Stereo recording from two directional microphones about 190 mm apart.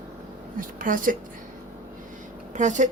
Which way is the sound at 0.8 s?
45° right (ahead or behind).